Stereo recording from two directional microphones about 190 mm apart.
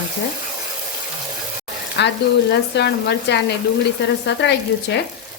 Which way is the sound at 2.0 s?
65° left (ahead or behind).